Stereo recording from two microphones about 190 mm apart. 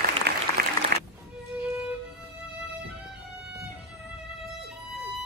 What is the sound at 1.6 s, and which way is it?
Music, 5° right (ahead or behind).